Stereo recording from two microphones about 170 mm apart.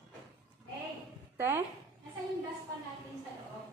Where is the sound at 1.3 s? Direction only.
10° right (ahead or behind).